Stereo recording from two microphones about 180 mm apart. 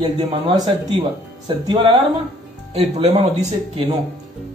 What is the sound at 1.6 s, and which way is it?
Speech, 25° right (ahead or behind).